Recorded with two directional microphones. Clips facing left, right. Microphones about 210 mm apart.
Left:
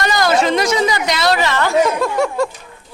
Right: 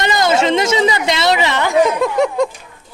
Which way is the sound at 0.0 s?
20° right (ahead or behind).